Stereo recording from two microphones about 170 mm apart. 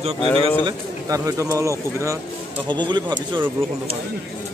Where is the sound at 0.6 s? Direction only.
20° right (ahead or behind).